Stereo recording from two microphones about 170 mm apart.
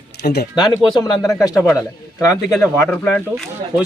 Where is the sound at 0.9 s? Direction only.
25° left (ahead or behind).